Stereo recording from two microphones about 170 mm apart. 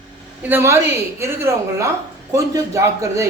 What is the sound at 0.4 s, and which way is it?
A man's voice, 15° right (ahead or behind).